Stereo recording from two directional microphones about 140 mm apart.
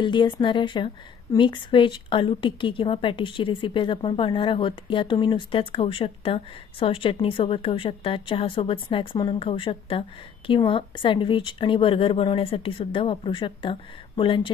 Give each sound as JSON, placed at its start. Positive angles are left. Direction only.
{"t": 0.0, "sound": "a woman's voice", "side_deg": 35}